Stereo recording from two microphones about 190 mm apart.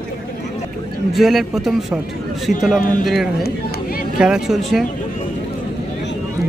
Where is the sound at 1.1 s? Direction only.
Centre (ahead or behind).